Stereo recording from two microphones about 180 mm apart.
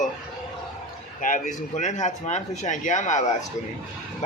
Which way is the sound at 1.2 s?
45° left (ahead or behind).